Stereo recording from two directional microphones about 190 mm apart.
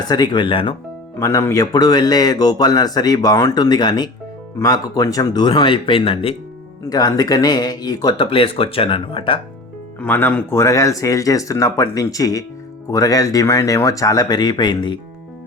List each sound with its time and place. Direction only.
0.0 s a man's voice: 20° left (ahead or behind)
1.2 s a man's voice: 15° left (ahead or behind)
10.0 s speech: 10° left (ahead or behind)